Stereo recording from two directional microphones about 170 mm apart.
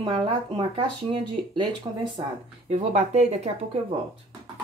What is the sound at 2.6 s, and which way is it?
Speech, 40° right (ahead or behind).